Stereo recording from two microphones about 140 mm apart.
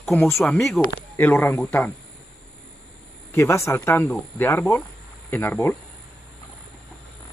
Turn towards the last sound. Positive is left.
turn(degrees=15)  # may be behind; listen again after turning